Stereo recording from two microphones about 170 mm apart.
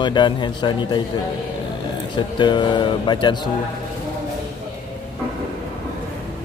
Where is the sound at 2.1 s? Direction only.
25° left (ahead or behind).